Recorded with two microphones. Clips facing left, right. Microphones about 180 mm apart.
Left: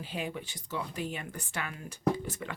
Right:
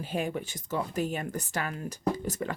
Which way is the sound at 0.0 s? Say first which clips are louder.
Right 5 dB; 45° right (ahead or behind).